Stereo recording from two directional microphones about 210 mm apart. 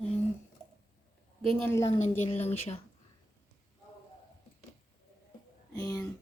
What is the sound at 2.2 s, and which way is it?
Speech, 30° left (ahead or behind).